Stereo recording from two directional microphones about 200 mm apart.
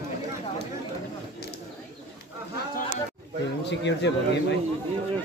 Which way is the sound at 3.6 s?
60° left (ahead or behind).